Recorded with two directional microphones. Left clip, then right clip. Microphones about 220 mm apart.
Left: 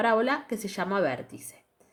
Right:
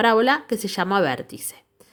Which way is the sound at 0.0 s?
40° right (ahead or behind).